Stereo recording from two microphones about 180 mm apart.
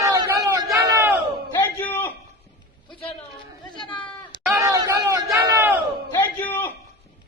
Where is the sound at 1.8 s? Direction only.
10° left (ahead or behind).